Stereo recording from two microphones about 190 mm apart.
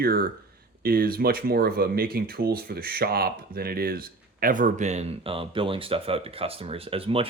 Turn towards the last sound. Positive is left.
turn(degrees=-30)  # may be behind; listen again after turning